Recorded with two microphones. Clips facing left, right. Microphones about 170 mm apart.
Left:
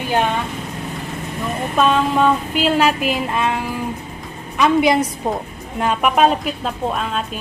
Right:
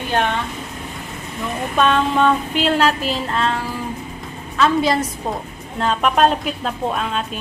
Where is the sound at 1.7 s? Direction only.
5° left (ahead or behind).